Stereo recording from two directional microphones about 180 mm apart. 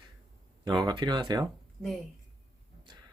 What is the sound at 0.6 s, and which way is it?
Speech, 25° right (ahead or behind).